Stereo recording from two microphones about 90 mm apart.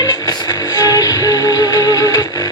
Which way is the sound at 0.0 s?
45° left (ahead or behind).